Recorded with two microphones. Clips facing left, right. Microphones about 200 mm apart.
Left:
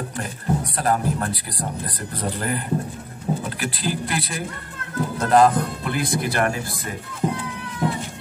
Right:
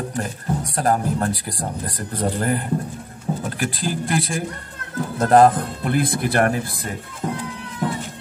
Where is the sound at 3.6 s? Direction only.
45° right (ahead or behind).